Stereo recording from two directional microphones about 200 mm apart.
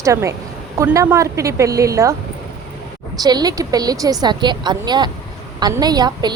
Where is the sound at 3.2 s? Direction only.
20° right (ahead or behind).